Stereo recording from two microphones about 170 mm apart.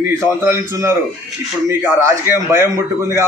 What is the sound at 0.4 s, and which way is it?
A man's voice, 15° right (ahead or behind).